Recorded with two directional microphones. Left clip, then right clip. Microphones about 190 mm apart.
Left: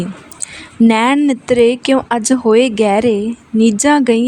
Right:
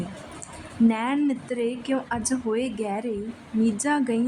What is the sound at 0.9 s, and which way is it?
Speech, 50° left (ahead or behind).